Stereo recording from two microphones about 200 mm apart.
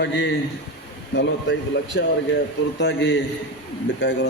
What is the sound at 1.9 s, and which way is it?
A man's voice, 60° left (ahead or behind).